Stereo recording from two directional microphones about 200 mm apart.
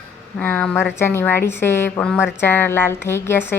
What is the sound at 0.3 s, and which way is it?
A woman's voice, 10° left (ahead or behind).